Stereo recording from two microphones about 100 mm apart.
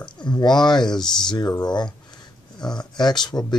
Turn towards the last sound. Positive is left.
turn(degrees=45)  # may be behind; listen again after turning